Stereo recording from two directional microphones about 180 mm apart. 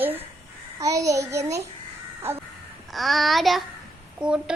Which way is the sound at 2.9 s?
Centre (ahead or behind).